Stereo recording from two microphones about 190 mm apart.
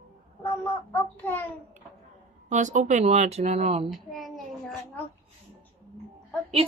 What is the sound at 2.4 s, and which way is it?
Speech, 40° right (ahead or behind).